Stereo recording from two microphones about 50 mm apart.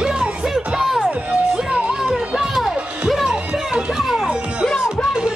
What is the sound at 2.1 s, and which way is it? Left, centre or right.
Music, centre.